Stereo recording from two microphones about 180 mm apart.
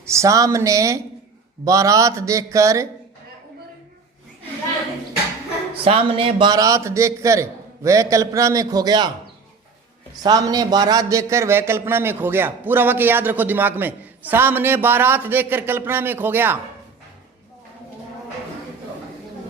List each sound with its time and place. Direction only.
0.0 s a man's voice: 15° right (ahead or behind)
5.7 s a man's voice: 30° right (ahead or behind)
10.2 s a man's voice: 20° right (ahead or behind)